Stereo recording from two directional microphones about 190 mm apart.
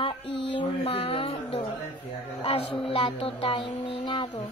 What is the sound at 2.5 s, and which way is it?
Speech, 30° left (ahead or behind).